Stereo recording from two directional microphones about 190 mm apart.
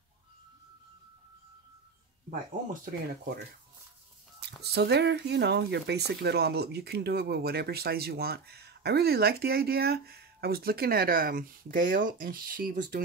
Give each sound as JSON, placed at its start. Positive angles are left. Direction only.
{"t": 2.7, "sound": "speech", "side_deg": -50}
{"t": 4.7, "sound": "speech", "side_deg": -60}